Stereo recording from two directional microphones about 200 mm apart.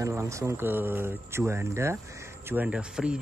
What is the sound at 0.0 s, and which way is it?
Speech, 15° right (ahead or behind).